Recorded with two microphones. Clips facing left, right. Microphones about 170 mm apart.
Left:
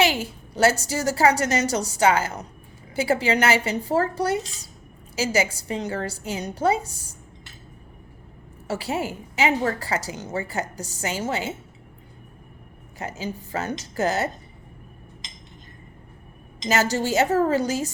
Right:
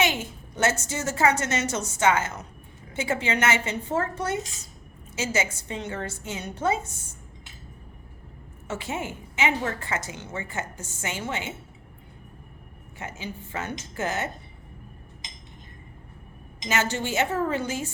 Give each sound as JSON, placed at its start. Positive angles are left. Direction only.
{"t": 0.0, "sound": "a woman's voice", "side_deg": 35}
{"t": 8.6, "sound": "a woman's voice", "side_deg": 35}
{"t": 13.0, "sound": "a woman's voice", "side_deg": 40}
{"t": 16.6, "sound": "a woman's voice", "side_deg": 40}